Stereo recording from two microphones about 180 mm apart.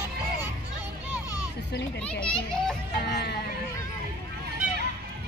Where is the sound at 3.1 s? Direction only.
65° left (ahead or behind).